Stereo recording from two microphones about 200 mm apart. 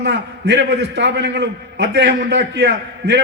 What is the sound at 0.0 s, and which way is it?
A man's voice, 60° right (ahead or behind).